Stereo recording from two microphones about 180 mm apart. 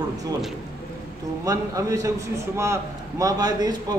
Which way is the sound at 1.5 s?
20° right (ahead or behind).